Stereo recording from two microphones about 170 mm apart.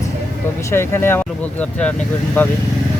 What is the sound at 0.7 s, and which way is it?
Speech, 15° left (ahead or behind).